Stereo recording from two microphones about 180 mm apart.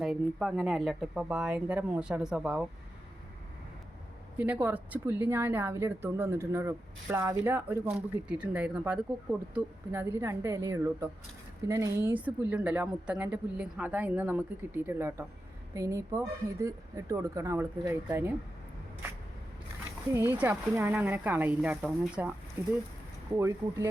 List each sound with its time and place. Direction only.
0.0 s speech: centre (ahead or behind)
4.4 s speech: 10° right (ahead or behind)
20.1 s speech: 10° right (ahead or behind)